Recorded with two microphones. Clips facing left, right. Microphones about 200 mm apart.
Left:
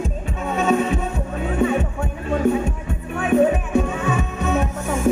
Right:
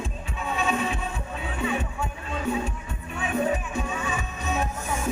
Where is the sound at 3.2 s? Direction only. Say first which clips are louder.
Left 9 dB; 55° left (ahead or behind).